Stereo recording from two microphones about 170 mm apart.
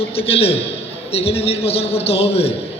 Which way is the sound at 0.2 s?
35° left (ahead or behind).